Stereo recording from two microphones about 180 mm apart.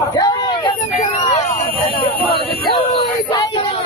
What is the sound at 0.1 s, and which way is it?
Hubbub, 25° left (ahead or behind).